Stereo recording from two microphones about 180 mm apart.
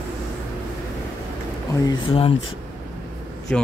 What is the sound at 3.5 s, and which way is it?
Speech, 5° left (ahead or behind).